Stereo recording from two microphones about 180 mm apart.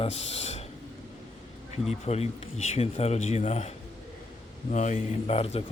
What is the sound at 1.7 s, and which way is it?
A man's voice, 35° left (ahead or behind).